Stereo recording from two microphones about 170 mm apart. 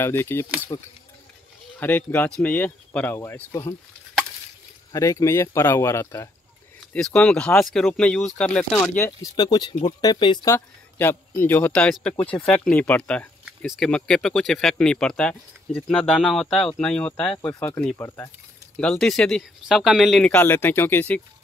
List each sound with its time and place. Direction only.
0.0 s a man's voice: 15° left (ahead or behind)
0.7 s speech: 25° left (ahead or behind)
1.8 s a man's voice: 10° left (ahead or behind)
4.9 s a man's voice: 20° left (ahead or behind)
6.9 s speech: 5° left (ahead or behind)
9.2 s speech: 25° left (ahead or behind)
10.5 s a man's voice: 10° left (ahead or behind)
18.8 s speech: 5° left (ahead or behind)